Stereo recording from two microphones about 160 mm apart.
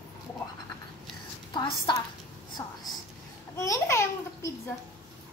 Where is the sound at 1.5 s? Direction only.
30° left (ahead or behind).